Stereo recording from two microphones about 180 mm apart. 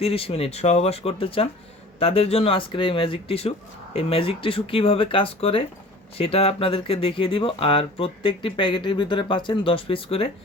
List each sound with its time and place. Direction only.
0.0 s speech: 30° left (ahead or behind)